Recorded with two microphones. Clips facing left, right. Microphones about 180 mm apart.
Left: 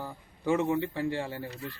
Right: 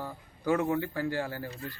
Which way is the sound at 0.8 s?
25° left (ahead or behind).